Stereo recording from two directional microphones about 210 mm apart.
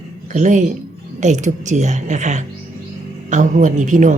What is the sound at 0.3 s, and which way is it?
Speech, 35° right (ahead or behind).